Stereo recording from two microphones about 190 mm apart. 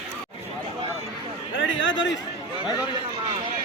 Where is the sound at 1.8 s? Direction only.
80° left.